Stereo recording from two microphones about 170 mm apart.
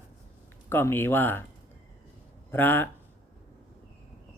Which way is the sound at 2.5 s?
10° left (ahead or behind).